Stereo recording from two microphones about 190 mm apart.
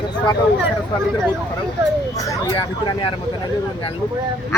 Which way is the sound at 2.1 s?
20° left (ahead or behind).